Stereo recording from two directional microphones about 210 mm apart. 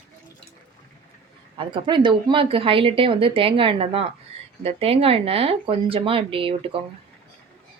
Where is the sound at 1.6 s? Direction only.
25° right (ahead or behind).